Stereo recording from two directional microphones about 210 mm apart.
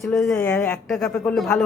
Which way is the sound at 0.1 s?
Centre (ahead or behind).